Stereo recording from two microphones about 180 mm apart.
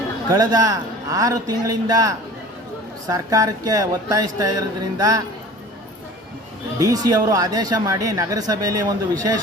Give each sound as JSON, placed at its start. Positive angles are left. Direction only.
{"t": 0.3, "sound": "speech", "side_deg": -20}
{"t": 6.7, "sound": "speech", "side_deg": -20}